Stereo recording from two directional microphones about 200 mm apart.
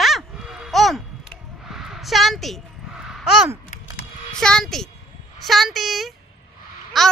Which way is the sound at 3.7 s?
35° left (ahead or behind).